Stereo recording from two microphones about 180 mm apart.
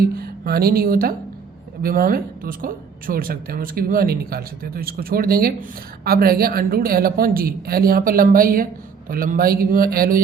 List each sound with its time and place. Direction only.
0.0 s speech: 60° right (ahead or behind)